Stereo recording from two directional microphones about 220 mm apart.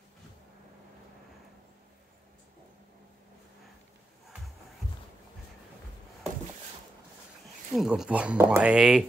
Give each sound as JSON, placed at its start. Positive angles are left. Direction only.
{"t": 7.7, "sound": "speech", "side_deg": 0}